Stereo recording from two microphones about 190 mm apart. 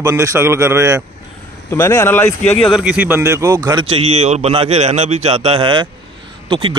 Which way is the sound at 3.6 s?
25° right (ahead or behind).